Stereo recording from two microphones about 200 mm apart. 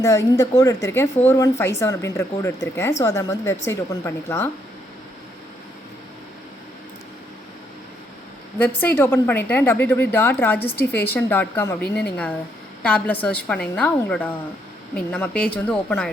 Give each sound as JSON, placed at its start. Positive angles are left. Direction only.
{"t": 0.0, "sound": "a woman's voice", "side_deg": 15}
{"t": 8.5, "sound": "a woman's voice", "side_deg": 10}
{"t": 11.8, "sound": "a woman's voice", "side_deg": 55}
{"t": 12.1, "sound": "a woman's voice", "side_deg": 5}